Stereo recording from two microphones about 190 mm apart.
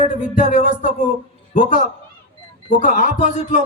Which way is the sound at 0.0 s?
40° left (ahead or behind).